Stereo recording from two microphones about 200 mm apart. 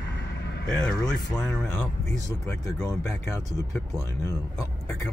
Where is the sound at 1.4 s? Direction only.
5° left (ahead or behind).